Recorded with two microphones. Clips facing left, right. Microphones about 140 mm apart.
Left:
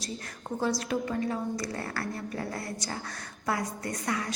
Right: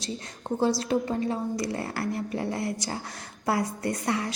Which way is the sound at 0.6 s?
30° right (ahead or behind).